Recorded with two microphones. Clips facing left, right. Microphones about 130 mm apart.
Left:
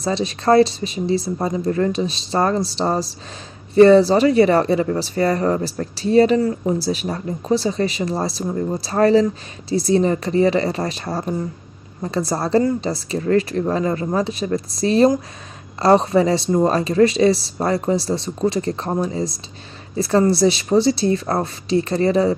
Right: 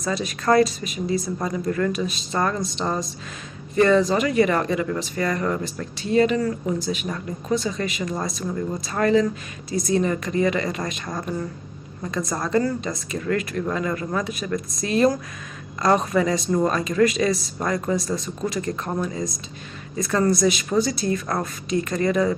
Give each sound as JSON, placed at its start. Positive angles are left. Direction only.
{"t": 0.0, "sound": "speech", "side_deg": 30}